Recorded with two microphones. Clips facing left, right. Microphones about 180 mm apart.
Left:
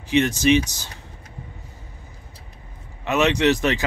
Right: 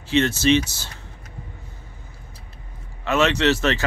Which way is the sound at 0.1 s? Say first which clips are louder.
Left 1 dB; 15° left (ahead or behind).